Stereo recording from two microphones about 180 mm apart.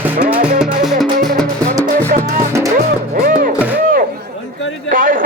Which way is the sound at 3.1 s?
55° right (ahead or behind).